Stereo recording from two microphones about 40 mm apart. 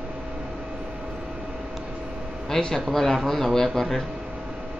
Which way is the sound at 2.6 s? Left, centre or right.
Centre.